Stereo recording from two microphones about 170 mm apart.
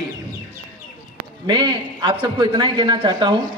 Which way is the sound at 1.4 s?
30° right (ahead or behind).